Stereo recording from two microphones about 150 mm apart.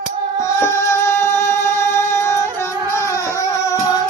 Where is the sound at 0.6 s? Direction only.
20° left (ahead or behind).